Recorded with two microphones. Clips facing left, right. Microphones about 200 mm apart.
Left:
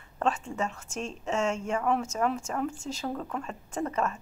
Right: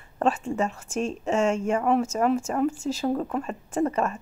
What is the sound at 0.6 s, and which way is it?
Speech, 10° right (ahead or behind).